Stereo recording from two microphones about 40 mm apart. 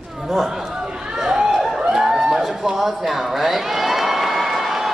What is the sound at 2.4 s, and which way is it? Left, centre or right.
Crowd, centre.